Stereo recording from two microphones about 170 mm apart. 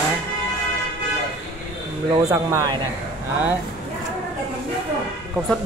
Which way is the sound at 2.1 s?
20° right (ahead or behind).